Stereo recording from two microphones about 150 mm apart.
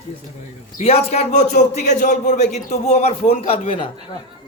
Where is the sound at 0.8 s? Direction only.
40° left (ahead or behind).